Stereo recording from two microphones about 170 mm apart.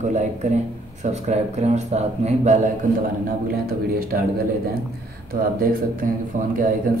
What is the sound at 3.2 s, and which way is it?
Speech, 60° right (ahead or behind).